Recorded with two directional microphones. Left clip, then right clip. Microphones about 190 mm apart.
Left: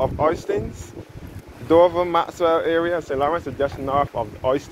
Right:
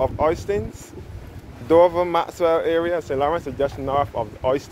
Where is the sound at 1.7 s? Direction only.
20° right (ahead or behind).